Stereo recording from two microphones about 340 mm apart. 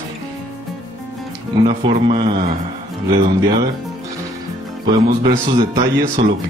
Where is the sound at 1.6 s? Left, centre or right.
Centre.